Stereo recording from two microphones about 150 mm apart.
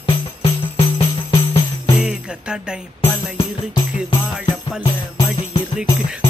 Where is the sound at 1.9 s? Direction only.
5° right (ahead or behind).